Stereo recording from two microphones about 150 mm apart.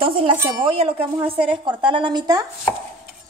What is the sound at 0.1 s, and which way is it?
A woman's voice, 35° right (ahead or behind).